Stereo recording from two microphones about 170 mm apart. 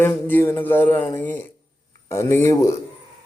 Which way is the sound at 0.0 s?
10° left (ahead or behind).